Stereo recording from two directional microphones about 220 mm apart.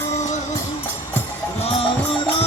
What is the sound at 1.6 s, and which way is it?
Music, 25° left (ahead or behind).